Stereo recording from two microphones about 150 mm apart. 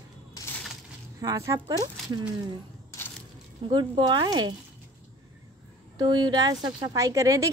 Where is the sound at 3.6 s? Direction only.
30° right (ahead or behind).